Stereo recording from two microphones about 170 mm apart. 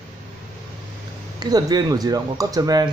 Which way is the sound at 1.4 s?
25° right (ahead or behind).